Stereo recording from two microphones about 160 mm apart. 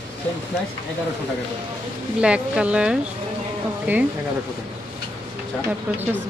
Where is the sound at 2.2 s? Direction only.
5° right (ahead or behind).